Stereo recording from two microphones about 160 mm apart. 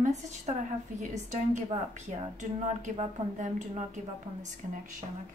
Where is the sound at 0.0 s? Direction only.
45° right (ahead or behind).